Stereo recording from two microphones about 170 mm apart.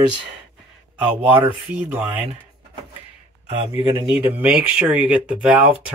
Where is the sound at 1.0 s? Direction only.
10° right (ahead or behind).